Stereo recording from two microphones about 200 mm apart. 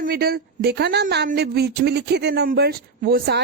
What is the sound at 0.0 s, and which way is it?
Speech, 50° right (ahead or behind).